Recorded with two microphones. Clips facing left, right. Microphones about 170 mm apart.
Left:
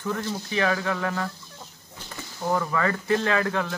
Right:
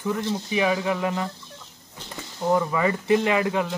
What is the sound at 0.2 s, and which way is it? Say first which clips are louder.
Speech: right 2 dB; 20° right (ahead or behind).